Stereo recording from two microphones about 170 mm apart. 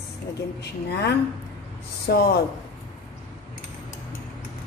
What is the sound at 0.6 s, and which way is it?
Speech, 75° left (ahead or behind).